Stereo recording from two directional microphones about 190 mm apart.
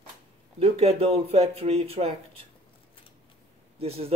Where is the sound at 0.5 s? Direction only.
30° right (ahead or behind).